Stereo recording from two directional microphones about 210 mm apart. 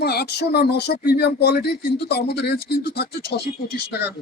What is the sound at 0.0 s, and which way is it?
Speech, 50° left (ahead or behind).